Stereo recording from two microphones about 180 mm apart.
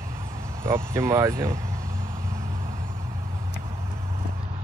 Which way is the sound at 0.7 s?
15° right (ahead or behind).